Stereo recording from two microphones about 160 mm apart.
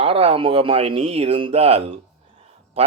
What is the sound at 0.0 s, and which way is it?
Speech, 35° right (ahead or behind).